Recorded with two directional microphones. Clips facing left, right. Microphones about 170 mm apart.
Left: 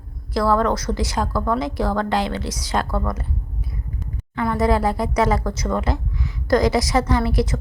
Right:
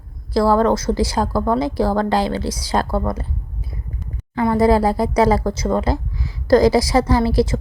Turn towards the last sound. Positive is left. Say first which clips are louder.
# right 4 dB
turn(degrees=-30)  # may be behind; listen again after turning